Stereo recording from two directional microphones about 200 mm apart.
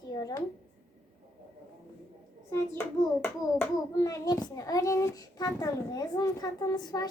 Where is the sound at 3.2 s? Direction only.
15° left (ahead or behind).